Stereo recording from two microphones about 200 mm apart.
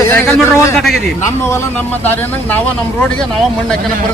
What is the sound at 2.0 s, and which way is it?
Speech, 10° left (ahead or behind).